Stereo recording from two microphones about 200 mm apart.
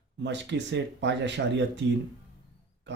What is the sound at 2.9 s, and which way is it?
Wild animals, 60° right (ahead or behind).